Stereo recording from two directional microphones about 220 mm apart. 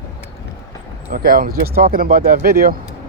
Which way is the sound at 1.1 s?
40° right (ahead or behind).